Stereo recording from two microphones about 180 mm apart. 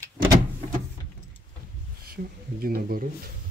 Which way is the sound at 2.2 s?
50° right (ahead or behind).